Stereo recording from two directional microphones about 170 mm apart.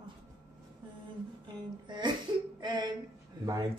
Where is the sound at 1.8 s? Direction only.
25° right (ahead or behind).